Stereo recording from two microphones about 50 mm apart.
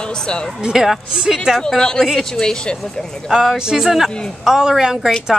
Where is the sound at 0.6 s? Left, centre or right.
Centre.